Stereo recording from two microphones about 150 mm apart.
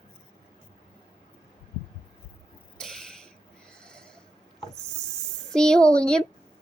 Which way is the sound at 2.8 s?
5° left (ahead or behind).